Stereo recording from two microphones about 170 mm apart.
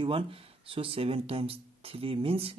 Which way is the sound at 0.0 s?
35° right (ahead or behind).